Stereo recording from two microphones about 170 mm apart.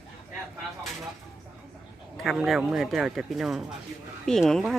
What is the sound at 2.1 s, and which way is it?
Speech, centre (ahead or behind).